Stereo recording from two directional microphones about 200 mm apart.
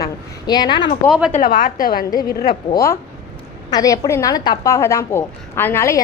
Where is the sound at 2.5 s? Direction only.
15° left (ahead or behind).